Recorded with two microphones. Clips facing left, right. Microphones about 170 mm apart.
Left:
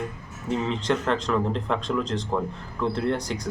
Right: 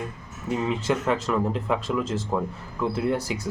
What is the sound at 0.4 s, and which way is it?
Speech, 5° right (ahead or behind).